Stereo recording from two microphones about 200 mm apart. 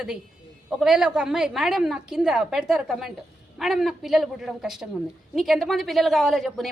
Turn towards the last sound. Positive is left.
turn(degrees=0)  # may be behind; listen again after turning